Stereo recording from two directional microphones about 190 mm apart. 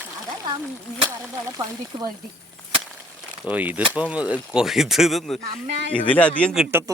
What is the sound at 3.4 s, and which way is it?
A man's voice, 10° right (ahead or behind).